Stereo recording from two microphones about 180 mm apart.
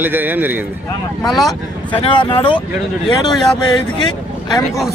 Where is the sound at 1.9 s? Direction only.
30° left (ahead or behind).